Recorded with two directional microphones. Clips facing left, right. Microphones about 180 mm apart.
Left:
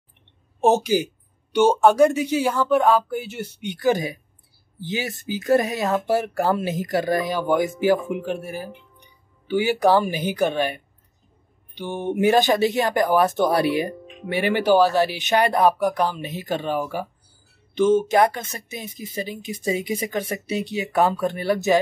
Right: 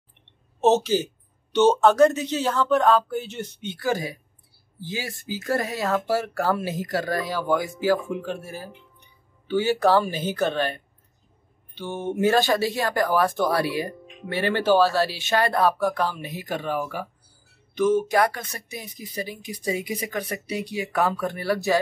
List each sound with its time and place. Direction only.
0.6 s speech: 10° left (ahead or behind)
3.7 s speech: 20° left (ahead or behind)